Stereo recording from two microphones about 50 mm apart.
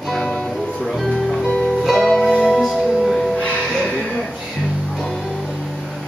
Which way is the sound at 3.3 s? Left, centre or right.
Left.